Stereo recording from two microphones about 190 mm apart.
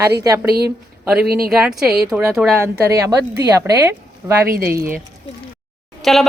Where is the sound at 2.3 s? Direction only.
Centre (ahead or behind).